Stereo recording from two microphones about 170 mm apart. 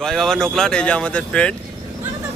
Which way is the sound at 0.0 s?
5° left (ahead or behind).